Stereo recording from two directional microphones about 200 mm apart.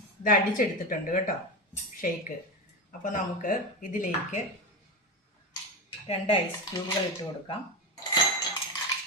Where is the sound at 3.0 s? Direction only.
40° left (ahead or behind).